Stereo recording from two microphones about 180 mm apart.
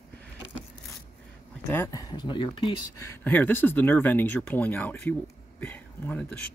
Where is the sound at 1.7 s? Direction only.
15° left (ahead or behind).